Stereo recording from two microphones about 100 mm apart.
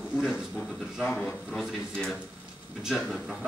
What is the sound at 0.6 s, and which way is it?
A man's voice, 5° left (ahead or behind).